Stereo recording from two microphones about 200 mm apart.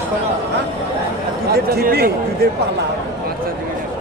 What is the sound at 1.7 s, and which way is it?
Speech, 50° right (ahead or behind).